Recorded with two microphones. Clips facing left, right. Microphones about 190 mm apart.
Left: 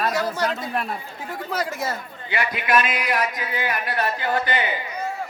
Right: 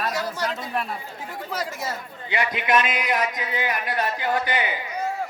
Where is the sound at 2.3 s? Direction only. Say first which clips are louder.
Even; 20° right (ahead or behind).